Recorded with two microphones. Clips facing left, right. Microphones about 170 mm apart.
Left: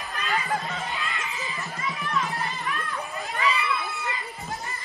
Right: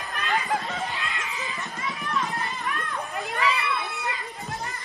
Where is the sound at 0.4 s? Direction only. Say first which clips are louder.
Right 1 dB; centre (ahead or behind).